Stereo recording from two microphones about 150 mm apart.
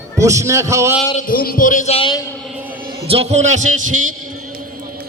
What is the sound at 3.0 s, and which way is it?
Speech, 40° right (ahead or behind).